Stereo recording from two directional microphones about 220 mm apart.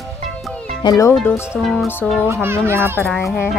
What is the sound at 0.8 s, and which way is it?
Speech, 15° left (ahead or behind).